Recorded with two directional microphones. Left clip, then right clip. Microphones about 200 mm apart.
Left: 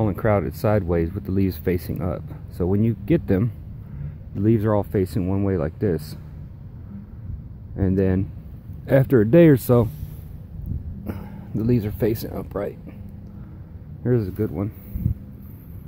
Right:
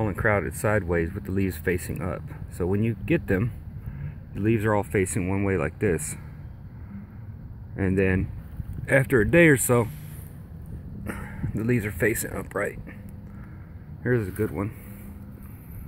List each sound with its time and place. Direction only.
0.0 s speech: 15° left (ahead or behind)
7.7 s speech: centre (ahead or behind)
8.8 s speech: 15° left (ahead or behind)
11.1 s a sound: centre (ahead or behind)
12.3 s speech: 5° left (ahead or behind)
14.0 s speech: 5° left (ahead or behind)